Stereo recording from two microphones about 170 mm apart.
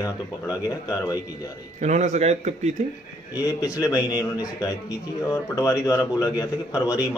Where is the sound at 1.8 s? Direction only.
45° right (ahead or behind).